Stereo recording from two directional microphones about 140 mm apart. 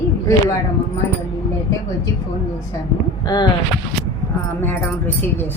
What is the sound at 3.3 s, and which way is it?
Speech, 25° left (ahead or behind).